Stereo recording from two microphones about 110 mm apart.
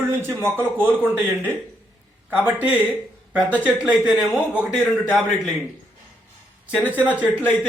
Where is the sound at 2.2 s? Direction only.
15° right (ahead or behind).